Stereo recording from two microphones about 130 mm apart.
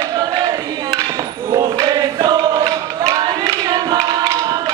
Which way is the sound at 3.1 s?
30° right (ahead or behind).